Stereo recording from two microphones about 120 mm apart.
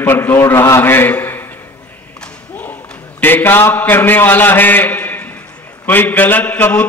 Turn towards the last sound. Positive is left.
turn(degrees=15)  # may be behind; listen again after turning